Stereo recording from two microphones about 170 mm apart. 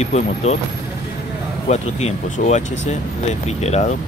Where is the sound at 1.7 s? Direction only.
40° left (ahead or behind).